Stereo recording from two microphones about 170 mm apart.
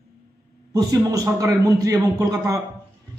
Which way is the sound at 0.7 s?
20° right (ahead or behind).